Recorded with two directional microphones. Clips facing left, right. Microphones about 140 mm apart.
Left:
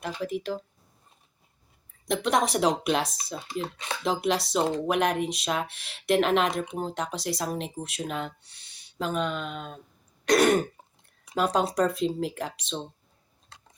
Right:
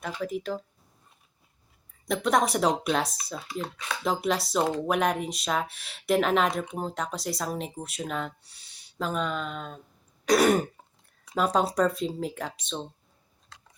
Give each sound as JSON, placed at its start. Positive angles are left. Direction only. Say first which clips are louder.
{"t": 0.0, "sound": "speech", "louder": "left 1 dB", "side_deg": 0}
{"t": 2.0, "sound": "speech", "louder": "right 1 dB", "side_deg": 0}
{"t": 3.3, "sound": "speech", "louder": "left 2 dB", "side_deg": 25}
{"t": 4.0, "sound": "speech", "louder": "left 1 dB", "side_deg": 0}